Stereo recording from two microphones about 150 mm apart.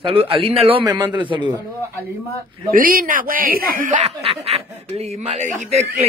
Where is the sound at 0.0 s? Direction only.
40° right (ahead or behind).